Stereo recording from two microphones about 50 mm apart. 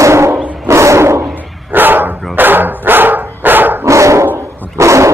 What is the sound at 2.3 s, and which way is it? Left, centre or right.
Dog, right.